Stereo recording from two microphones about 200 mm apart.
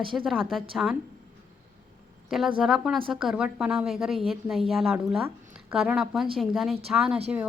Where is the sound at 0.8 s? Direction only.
Centre (ahead or behind).